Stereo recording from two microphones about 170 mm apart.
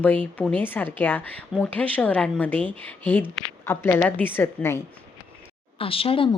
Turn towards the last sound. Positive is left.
turn(degrees=30)  # may be behind; listen again after turning